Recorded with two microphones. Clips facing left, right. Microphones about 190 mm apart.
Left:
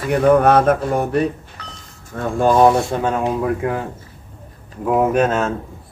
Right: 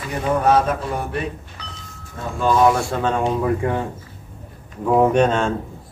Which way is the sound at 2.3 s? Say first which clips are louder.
Left 4 dB; 45° left (ahead or behind).